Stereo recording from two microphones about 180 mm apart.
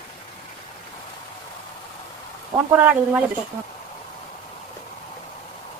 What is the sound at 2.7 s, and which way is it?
Speech, 10° right (ahead or behind).